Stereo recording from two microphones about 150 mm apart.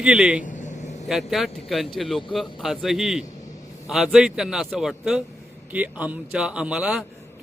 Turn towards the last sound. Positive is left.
turn(degrees=-5)  # may be behind; listen again after turning